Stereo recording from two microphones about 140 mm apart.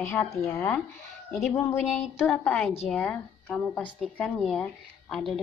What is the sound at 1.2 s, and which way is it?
Speech, centre (ahead or behind).